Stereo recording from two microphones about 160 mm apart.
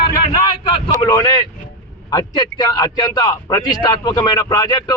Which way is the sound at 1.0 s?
20° left (ahead or behind).